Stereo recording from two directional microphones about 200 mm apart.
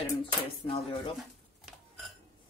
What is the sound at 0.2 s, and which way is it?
Dishes, 30° left (ahead or behind).